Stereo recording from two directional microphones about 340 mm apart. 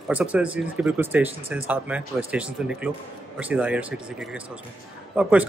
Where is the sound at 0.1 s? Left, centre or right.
Centre.